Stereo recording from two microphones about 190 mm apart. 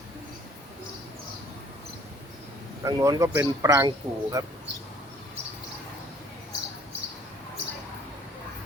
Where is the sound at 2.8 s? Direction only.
15° right (ahead or behind).